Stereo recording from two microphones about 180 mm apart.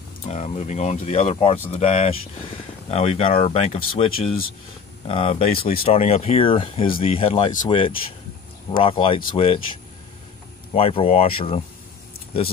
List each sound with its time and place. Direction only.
0.3 s speech: 35° left (ahead or behind)
10.7 s speech: 30° left (ahead or behind)